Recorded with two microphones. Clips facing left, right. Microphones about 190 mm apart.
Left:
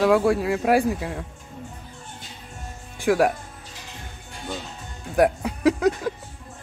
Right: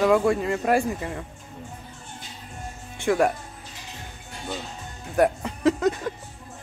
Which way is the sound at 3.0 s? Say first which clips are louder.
Left 2 dB; 5° left (ahead or behind).